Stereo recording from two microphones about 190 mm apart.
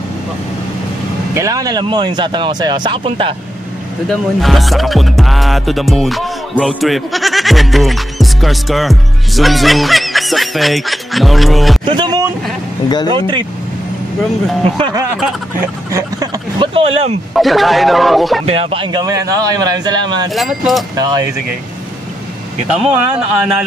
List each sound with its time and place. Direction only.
1.3 s speech: 15° right (ahead or behind)
4.1 s music: centre (ahead or behind)
11.8 s speech: 25° right (ahead or behind)
12.8 s speech: 20° left (ahead or behind)
13.1 s speech: 25° right (ahead or behind)
15.6 s speech: 15° right (ahead or behind)
17.3 s a man's voice: centre (ahead or behind)
18.4 s speech: 30° right (ahead or behind)
20.3 s a man's voice: centre (ahead or behind)
20.9 s speech: 20° right (ahead or behind)
22.7 s a man's voice: 5° right (ahead or behind)